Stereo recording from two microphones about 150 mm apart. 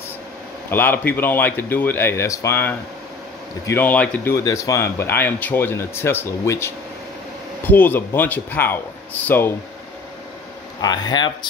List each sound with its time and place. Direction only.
0.7 s speech: 15° left (ahead or behind)
10.8 s speech: 30° left (ahead or behind)